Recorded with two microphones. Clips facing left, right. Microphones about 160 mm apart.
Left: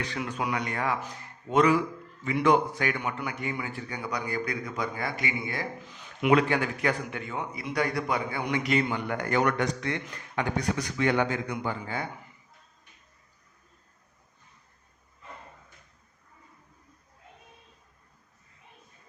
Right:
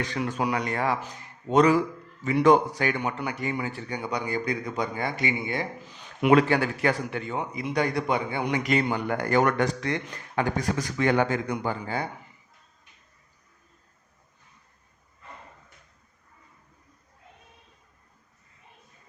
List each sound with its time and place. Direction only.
0.1 s a man's voice: 40° right (ahead or behind)
2.2 s a man's voice: 40° right (ahead or behind); by 5.6 s 25° right (ahead or behind)
6.2 s a man's voice: 35° right (ahead or behind)
7.5 s a man's voice: 20° right (ahead or behind)
8.6 s a man's voice: 40° right (ahead or behind)